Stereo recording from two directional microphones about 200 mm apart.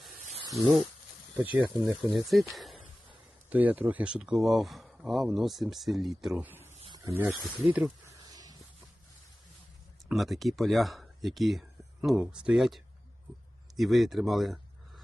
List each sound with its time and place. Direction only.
0.5 s speech: centre (ahead or behind)
6.7 s snake: 25° right (ahead or behind)
7.6 s speech: 5° right (ahead or behind)
8.2 s a sound: 20° right (ahead or behind)
10.1 s speech: centre (ahead or behind)